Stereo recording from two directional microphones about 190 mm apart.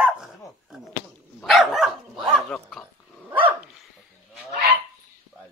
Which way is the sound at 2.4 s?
Centre (ahead or behind).